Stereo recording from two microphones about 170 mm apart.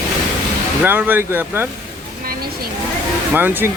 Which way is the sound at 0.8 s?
10° right (ahead or behind).